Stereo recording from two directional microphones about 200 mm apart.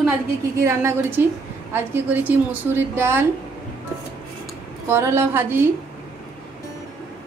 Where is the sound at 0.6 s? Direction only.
15° right (ahead or behind).